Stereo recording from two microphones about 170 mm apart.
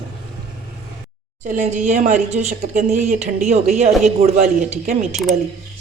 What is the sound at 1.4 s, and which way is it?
Speech, 45° right (ahead or behind).